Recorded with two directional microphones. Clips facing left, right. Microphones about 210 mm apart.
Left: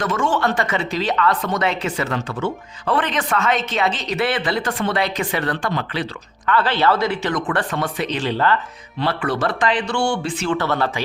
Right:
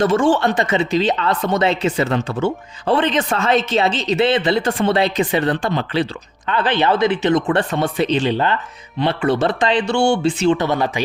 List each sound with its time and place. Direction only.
0.0 s speech: 30° right (ahead or behind); by 11.0 s 15° right (ahead or behind)